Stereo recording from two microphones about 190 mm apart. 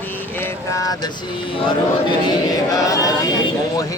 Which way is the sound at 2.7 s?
20° left (ahead or behind).